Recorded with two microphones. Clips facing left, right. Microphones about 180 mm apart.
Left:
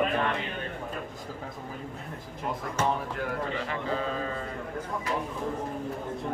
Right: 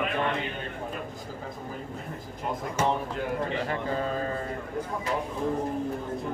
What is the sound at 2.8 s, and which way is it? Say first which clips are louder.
Speech: right 2 dB; 10° right (ahead or behind).